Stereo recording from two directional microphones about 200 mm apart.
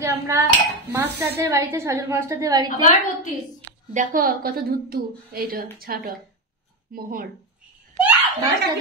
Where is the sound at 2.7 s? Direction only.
40° left (ahead or behind).